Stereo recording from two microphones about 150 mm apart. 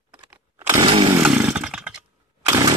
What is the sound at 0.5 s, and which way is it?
Chainsaw, 25° right (ahead or behind).